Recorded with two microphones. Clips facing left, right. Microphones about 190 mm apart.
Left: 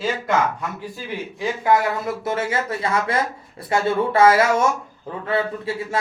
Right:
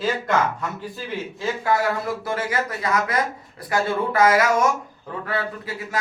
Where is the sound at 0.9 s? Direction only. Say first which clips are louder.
Even; 15° left (ahead or behind).